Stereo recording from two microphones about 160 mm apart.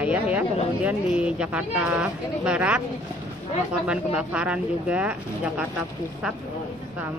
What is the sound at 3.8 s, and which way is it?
Speech, 5° right (ahead or behind).